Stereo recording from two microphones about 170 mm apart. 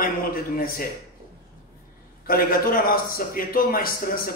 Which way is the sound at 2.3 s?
60° left (ahead or behind).